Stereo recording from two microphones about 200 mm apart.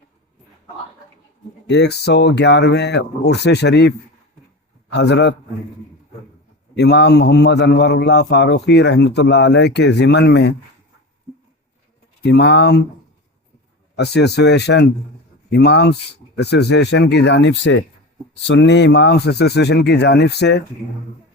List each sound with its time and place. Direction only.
1.7 s a man's voice: 60° left (ahead or behind)
6.7 s a man's voice: 60° left (ahead or behind)
12.2 s a man's voice: 55° left (ahead or behind)
13.9 s a man's voice: 55° left (ahead or behind)